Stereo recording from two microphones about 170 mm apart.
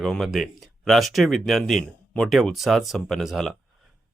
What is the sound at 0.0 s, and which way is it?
Speech, centre (ahead or behind).